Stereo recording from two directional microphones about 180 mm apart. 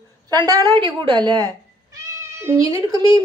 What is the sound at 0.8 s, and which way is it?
Cat, 25° right (ahead or behind).